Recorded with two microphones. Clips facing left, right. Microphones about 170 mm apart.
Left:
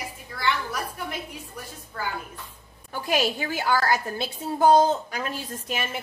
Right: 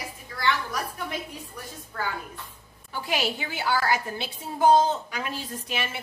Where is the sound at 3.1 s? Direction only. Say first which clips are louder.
Left 4 dB; 45° left (ahead or behind).